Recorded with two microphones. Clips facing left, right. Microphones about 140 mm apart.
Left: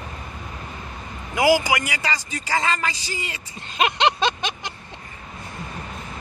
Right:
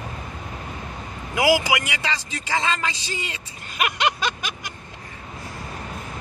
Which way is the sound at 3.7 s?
25° left (ahead or behind).